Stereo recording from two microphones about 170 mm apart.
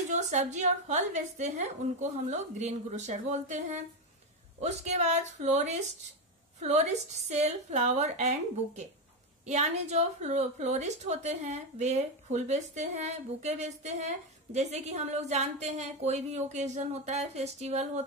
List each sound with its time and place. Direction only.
0.1 s a woman's voice: 45° right (ahead or behind)
7.2 s a woman's voice: 40° right (ahead or behind)